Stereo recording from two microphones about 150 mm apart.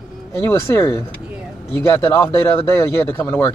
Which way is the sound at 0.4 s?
15° left (ahead or behind).